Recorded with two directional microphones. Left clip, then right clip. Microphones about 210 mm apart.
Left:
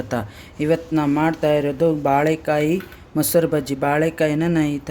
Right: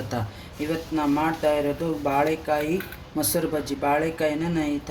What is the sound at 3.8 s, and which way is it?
Speech, 55° left (ahead or behind).